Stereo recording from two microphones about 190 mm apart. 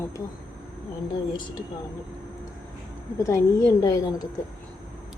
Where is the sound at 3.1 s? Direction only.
15° left (ahead or behind).